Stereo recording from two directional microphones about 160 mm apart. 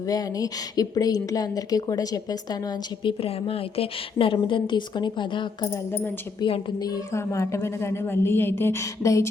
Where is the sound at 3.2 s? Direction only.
35° left (ahead or behind); by 6.1 s 15° left (ahead or behind).